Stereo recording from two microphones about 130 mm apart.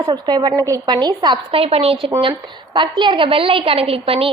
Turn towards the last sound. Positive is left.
turn(degrees=-45)  # may be behind; listen again after turning